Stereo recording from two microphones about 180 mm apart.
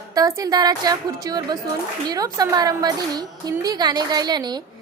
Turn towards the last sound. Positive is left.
turn(degrees=-25)  # may be behind; listen again after turning